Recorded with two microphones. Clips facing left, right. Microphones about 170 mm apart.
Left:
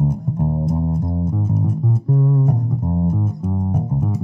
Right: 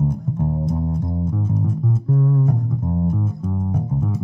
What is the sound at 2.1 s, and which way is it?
Bass guitar, 30° left (ahead or behind).